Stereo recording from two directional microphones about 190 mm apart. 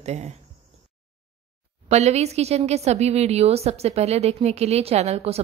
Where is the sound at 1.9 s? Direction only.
35° right (ahead or behind).